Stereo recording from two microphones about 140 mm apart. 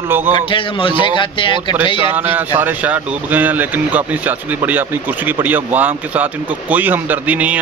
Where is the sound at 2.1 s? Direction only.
15° right (ahead or behind).